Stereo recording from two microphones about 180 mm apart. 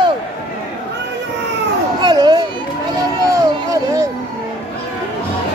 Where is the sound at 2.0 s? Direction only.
25° right (ahead or behind).